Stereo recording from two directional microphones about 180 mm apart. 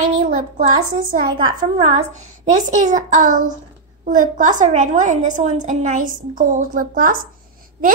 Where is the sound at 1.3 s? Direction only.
35° right (ahead or behind).